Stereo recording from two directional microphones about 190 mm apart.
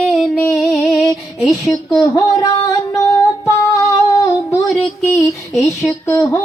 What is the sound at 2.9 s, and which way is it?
Female singing, 15° left (ahead or behind).